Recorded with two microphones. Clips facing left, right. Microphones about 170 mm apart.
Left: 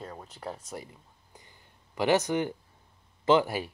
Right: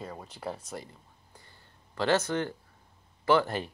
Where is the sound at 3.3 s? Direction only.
15° left (ahead or behind).